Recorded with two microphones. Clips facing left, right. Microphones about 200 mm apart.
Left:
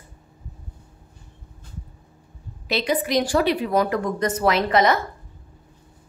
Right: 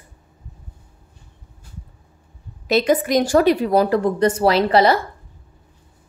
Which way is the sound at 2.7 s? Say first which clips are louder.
Right 6 dB; 45° right (ahead or behind).